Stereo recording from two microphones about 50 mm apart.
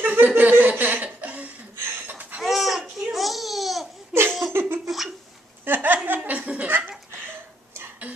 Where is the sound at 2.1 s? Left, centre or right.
Right.